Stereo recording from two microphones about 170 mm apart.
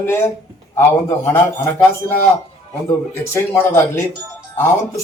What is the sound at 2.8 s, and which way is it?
Speech, 15° left (ahead or behind).